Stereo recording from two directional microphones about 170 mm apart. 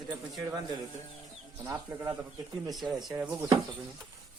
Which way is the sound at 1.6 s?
20° right (ahead or behind).